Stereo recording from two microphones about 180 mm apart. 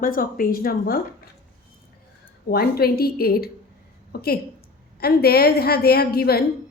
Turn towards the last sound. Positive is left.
turn(degrees=60)  # may be behind; listen again after turning